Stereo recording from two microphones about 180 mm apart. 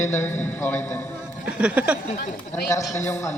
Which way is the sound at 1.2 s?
5° right (ahead or behind).